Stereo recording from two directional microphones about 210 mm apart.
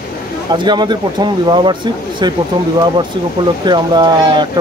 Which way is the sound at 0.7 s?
20° right (ahead or behind).